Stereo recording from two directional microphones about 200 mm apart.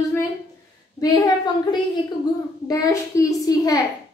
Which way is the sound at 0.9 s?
20° left (ahead or behind).